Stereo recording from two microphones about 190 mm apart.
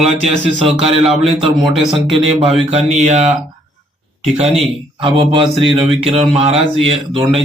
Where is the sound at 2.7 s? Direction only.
35° right (ahead or behind).